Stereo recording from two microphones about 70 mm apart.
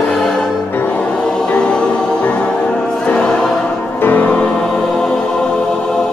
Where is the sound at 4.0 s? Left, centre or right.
Left.